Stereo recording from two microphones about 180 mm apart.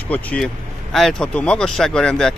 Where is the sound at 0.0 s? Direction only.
10° left (ahead or behind).